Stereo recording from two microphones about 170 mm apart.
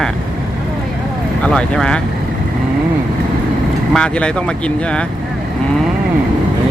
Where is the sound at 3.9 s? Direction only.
5° left (ahead or behind).